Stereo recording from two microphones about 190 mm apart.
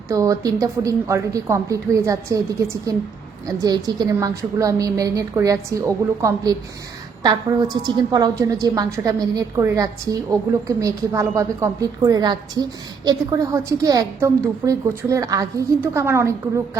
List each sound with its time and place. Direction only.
0.1 s a woman's voice: 15° right (ahead or behind)